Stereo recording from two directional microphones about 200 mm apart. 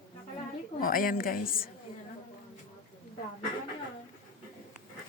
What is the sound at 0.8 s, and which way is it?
Speech, 45° left (ahead or behind).